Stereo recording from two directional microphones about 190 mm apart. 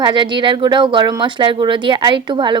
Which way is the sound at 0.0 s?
25° right (ahead or behind).